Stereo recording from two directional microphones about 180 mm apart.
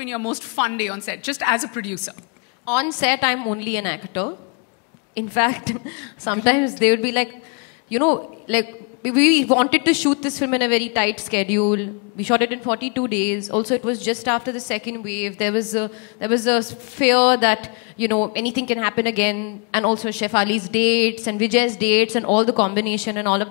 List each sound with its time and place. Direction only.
0.7 s speech: 5° right (ahead or behind)
8.5 s speech: 5° right (ahead or behind)
22.2 s speech: 25° left (ahead or behind)
22.8 s speech: 5° right (ahead or behind)
23.2 s speech: 25° left (ahead or behind)